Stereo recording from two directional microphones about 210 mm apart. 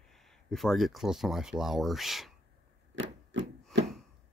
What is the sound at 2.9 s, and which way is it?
Chopping, 55° right (ahead or behind).